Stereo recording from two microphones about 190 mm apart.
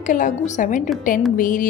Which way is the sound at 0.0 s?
45° left (ahead or behind).